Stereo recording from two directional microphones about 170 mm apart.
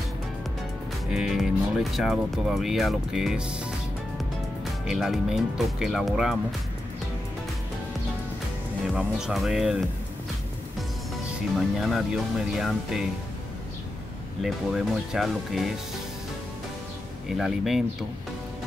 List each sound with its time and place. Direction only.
1.1 s speech: 5° right (ahead or behind)
4.8 s speech: centre (ahead or behind)
8.9 s speech: centre (ahead or behind)
11.8 s speech: centre (ahead or behind)
14.4 s speech: centre (ahead or behind)
17.3 s speech: centre (ahead or behind)